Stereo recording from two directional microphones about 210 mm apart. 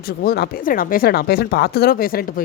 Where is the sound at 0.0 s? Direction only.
45° left (ahead or behind).